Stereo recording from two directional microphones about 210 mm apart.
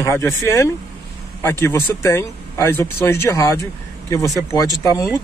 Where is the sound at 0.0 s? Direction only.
15° left (ahead or behind).